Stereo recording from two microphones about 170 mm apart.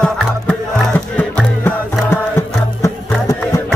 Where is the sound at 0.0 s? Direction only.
10° left (ahead or behind).